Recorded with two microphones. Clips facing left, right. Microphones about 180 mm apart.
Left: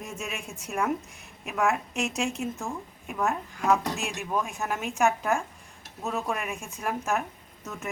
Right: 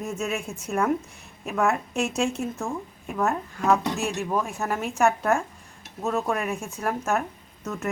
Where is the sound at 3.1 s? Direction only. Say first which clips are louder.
Right 3 dB; centre (ahead or behind).